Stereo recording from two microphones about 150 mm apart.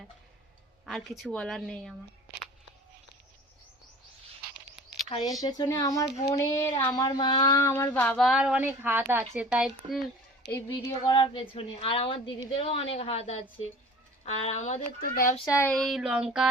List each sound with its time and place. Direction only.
0.9 s speech: centre (ahead or behind)
5.0 s a child's voice: 30° left (ahead or behind); by 9.7 s 5° right (ahead or behind)
10.7 s a woman's voice: 30° left (ahead or behind); by 15.1 s 50° left (ahead or behind)
15.4 s speech: 20° left (ahead or behind)
15.7 s speech: centre (ahead or behind)